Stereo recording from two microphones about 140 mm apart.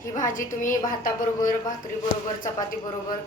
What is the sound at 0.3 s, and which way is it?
Speech, 70° left (ahead or behind).